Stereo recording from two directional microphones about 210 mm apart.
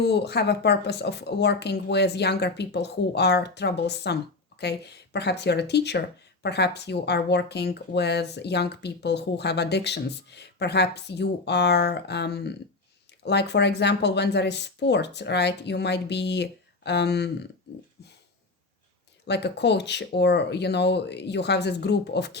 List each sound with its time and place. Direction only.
0.0 s speech: 50° left (ahead or behind)
19.2 s speech: 55° left (ahead or behind)